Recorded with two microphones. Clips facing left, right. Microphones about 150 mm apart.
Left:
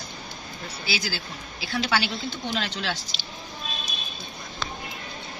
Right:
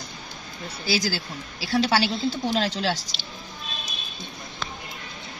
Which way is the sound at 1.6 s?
40° right (ahead or behind).